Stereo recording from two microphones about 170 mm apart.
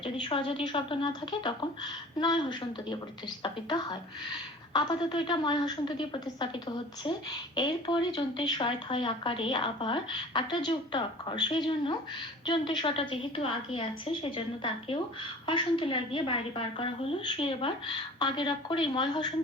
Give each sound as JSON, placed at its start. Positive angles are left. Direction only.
{"t": 0.0, "sound": "a woman's voice", "side_deg": 30}